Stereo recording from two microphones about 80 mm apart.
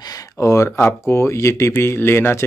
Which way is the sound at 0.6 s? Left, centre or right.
Left.